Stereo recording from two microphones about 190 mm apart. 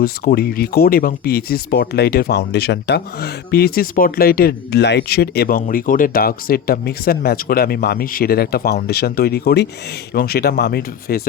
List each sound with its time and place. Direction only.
0.0 s speech: 55° left (ahead or behind)